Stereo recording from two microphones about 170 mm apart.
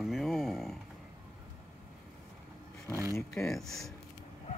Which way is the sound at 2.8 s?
15° right (ahead or behind).